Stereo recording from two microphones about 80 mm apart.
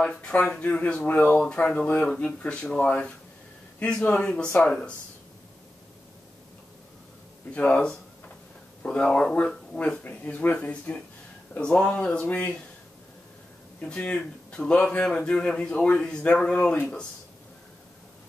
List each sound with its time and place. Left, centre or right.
0.0 s speech: centre
7.5 s speech: centre
10.0 s speech: left
13.7 s speech: centre